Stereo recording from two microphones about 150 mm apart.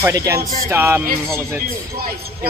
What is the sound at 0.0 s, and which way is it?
Speech, 20° right (ahead or behind).